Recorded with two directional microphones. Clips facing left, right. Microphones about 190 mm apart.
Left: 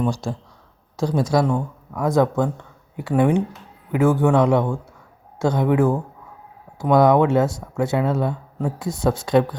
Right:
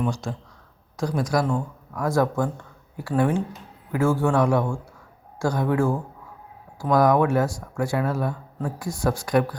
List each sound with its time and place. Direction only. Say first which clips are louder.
0.0 s speech: left 4 dB; 30° left (ahead or behind)